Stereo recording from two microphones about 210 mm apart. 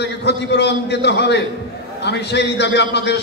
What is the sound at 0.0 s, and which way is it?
A man's voice, 55° left (ahead or behind).